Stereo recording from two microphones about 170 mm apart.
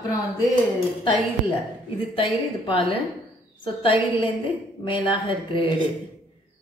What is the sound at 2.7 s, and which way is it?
A woman's voice, 30° left (ahead or behind).